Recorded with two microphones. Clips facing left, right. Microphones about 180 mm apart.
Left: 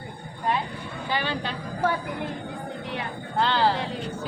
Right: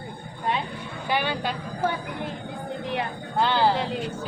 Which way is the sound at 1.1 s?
10° right (ahead or behind).